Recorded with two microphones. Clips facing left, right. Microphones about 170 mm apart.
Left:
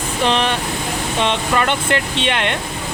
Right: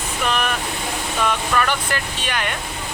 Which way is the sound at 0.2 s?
30° left (ahead or behind).